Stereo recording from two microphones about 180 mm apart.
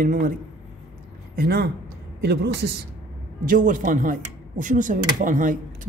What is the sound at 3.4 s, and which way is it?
Speech, 45° right (ahead or behind).